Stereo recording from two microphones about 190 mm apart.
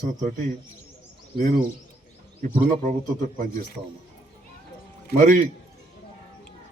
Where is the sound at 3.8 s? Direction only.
15° right (ahead or behind).